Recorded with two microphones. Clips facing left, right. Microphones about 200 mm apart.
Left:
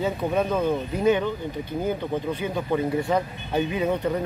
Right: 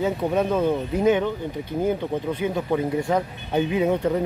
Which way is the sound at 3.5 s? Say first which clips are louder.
Right 3 dB; 20° right (ahead or behind).